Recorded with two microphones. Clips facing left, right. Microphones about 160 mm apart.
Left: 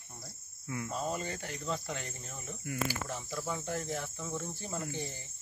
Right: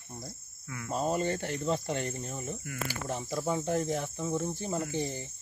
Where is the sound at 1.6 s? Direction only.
25° right (ahead or behind).